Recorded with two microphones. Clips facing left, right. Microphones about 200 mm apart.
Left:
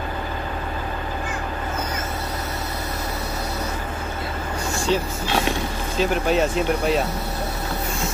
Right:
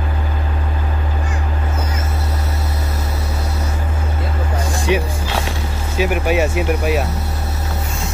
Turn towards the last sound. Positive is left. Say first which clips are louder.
# right 2 dB
turn(degrees=-10)  # may be behind; listen again after turning